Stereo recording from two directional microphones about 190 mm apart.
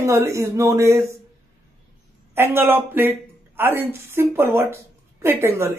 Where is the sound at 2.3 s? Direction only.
10° right (ahead or behind).